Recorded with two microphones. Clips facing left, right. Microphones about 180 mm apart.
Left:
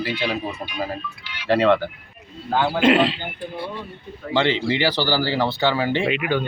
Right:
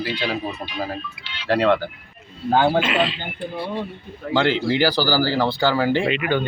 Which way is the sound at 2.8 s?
55° left (ahead or behind).